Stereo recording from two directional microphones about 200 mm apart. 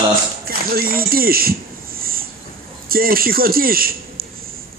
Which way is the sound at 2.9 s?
45° right (ahead or behind).